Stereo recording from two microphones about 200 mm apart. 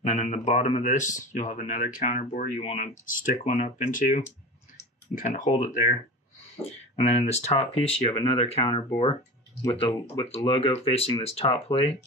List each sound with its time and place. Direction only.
0.0 s speech: 35° left (ahead or behind)